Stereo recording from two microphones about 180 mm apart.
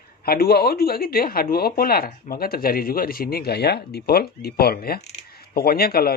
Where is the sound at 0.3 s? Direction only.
60° left (ahead or behind).